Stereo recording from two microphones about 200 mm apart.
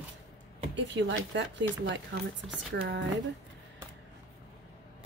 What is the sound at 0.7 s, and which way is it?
Speech, 65° right (ahead or behind).